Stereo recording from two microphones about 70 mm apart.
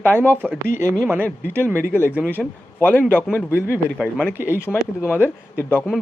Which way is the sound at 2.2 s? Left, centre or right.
Left.